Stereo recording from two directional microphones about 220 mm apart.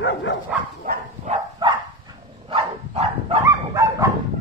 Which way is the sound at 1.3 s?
20° right (ahead or behind).